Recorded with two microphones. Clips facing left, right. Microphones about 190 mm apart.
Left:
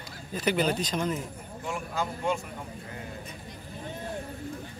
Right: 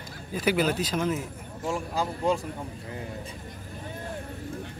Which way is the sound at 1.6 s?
35° right (ahead or behind).